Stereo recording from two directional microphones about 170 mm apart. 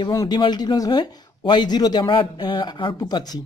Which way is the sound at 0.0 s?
20° left (ahead or behind).